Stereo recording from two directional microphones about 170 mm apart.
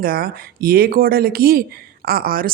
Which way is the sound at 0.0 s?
60° right (ahead or behind).